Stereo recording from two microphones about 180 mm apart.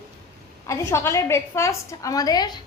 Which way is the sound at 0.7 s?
15° left (ahead or behind).